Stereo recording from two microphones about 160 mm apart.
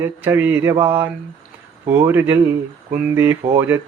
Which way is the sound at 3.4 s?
15° right (ahead or behind).